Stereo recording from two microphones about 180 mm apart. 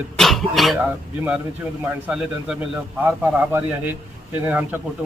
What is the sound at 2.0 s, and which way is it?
A man's voice, 5° right (ahead or behind).